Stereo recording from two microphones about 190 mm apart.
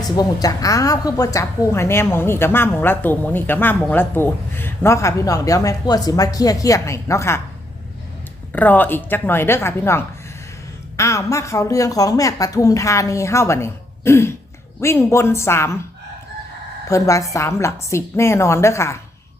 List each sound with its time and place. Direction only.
0.2 s a woman's voice: 20° left (ahead or behind)
8.5 s a woman's voice: 10° left (ahead or behind)
16.9 s a woman's voice: 15° left (ahead or behind)